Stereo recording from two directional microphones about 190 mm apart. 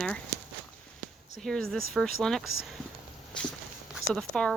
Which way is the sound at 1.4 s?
Centre (ahead or behind).